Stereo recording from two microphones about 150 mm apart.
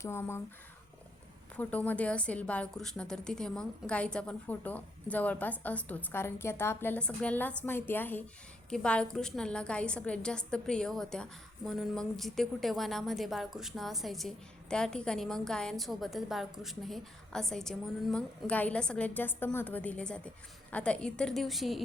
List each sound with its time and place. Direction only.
0.0 s a woman's voice: 15° left (ahead or behind)
1.5 s a woman's voice: 10° left (ahead or behind)